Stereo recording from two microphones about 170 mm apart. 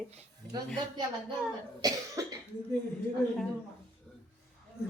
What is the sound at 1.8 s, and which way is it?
Cough, 20° right (ahead or behind).